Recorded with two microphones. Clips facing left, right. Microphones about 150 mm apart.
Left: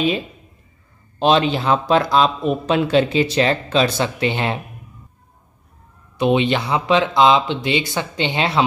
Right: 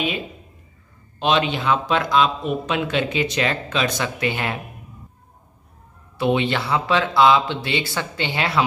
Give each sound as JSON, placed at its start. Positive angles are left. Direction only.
{"t": 1.2, "sound": "speech", "side_deg": 35}
{"t": 6.1, "sound": "speech", "side_deg": 20}